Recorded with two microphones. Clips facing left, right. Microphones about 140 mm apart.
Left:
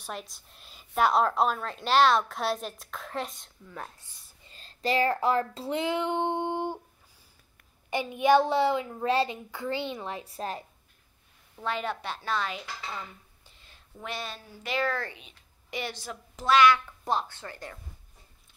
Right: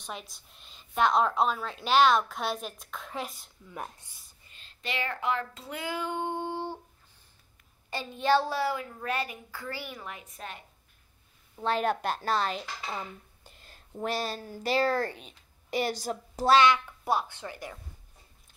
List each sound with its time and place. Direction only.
0.0 s a woman's voice: centre (ahead or behind)
3.7 s speech: 15° right (ahead or behind)
4.5 s child singing: 35° left (ahead or behind); by 6.8 s 15° left (ahead or behind)
7.9 s a woman's voice: 15° left (ahead or behind); by 10.6 s 35° left (ahead or behind)
11.8 s a woman's voice: 45° right (ahead or behind)
13.5 s a sound: 45° right (ahead or behind)
13.9 s speech: 35° right (ahead or behind)
17.0 s speech: 10° right (ahead or behind)